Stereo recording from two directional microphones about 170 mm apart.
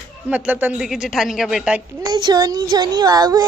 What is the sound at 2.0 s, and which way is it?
Speech, 25° right (ahead or behind).